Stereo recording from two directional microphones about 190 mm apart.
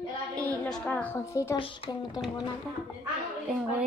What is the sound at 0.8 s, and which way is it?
Speech, 10° left (ahead or behind).